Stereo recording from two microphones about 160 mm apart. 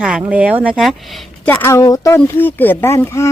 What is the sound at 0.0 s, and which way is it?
Speech, 5° right (ahead or behind).